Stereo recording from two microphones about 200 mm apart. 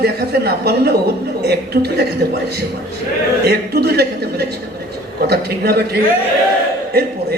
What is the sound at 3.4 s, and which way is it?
A woman's voice, 55° right (ahead or behind).